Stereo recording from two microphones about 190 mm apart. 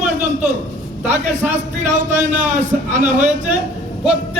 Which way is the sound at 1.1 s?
40° right (ahead or behind).